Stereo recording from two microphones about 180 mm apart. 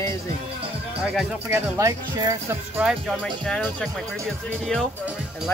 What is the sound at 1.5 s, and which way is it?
Speech, 15° right (ahead or behind).